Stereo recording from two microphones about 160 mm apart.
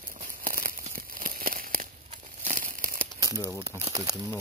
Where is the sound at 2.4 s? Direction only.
55° right (ahead or behind).